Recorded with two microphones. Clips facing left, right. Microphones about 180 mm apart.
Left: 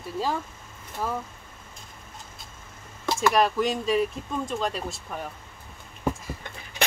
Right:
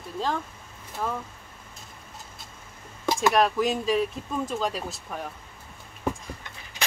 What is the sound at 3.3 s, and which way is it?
Speech, centre (ahead or behind).